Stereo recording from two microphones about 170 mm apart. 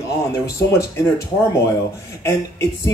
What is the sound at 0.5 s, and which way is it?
Speech, 15° left (ahead or behind).